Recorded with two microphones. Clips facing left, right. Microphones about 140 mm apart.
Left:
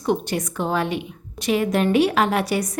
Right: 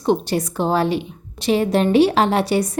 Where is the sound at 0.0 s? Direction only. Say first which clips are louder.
Right 4 dB; 30° right (ahead or behind).